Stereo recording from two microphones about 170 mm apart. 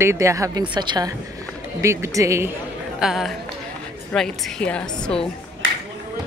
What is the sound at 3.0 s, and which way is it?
A woman's voice, centre (ahead or behind).